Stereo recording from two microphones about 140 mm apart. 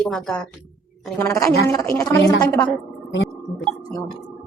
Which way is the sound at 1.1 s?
20° left (ahead or behind).